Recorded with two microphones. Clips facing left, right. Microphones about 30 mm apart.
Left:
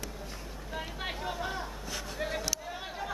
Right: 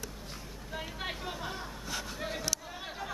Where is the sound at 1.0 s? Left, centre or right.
Centre.